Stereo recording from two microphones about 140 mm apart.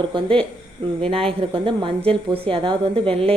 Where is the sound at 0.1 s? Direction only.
35° right (ahead or behind).